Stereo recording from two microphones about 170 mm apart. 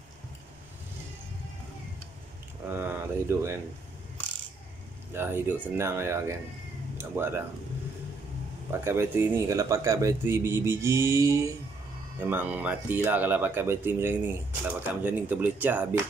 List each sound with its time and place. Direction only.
2.7 s speech: 15° right (ahead or behind)
5.1 s speech: 15° right (ahead or behind)
8.8 s speech: 15° right (ahead or behind)